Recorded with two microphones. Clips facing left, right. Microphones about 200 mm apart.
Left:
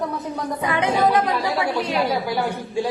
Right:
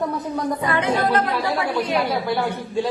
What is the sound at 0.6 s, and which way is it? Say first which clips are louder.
Speech: left 3 dB; 15° left (ahead or behind).